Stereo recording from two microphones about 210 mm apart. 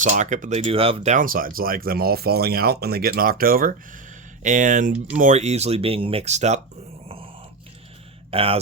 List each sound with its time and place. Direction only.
0.0 s speech: 35° right (ahead or behind)
8.3 s speech: 25° right (ahead or behind)